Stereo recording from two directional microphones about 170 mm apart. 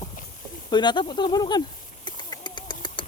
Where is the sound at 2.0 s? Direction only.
25° left (ahead or behind).